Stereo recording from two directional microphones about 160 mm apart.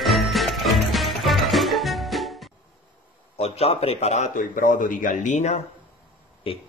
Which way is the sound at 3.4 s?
40° left (ahead or behind).